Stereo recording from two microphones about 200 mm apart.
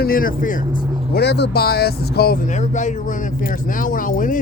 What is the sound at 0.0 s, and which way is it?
Speech, 45° left (ahead or behind).